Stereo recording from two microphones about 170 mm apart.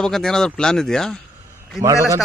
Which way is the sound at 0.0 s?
5° left (ahead or behind).